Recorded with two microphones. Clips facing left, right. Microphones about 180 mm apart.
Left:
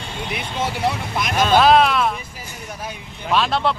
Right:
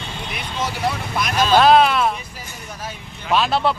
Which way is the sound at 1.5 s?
Centre (ahead or behind).